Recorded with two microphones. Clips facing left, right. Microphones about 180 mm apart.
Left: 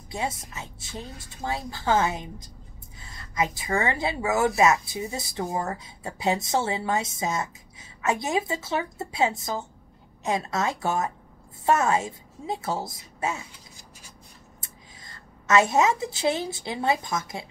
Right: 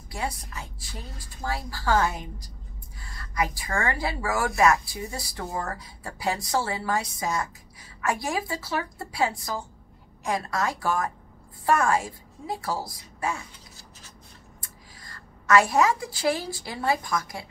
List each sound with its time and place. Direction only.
0.1 s a woman's voice: 25° left (ahead or behind)